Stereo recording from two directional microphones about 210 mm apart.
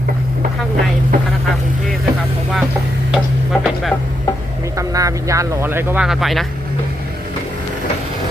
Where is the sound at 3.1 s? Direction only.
Centre (ahead or behind).